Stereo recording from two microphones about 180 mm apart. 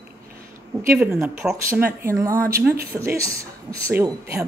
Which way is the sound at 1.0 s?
10° right (ahead or behind).